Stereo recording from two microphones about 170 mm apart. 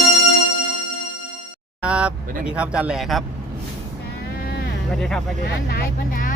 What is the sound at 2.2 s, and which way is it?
Speech, 55° right (ahead or behind).